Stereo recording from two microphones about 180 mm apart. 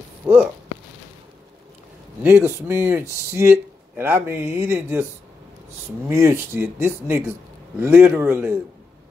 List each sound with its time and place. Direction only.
0.2 s speech: 5° right (ahead or behind)
2.2 s speech: 15° right (ahead or behind)
6.0 s speech: 15° right (ahead or behind)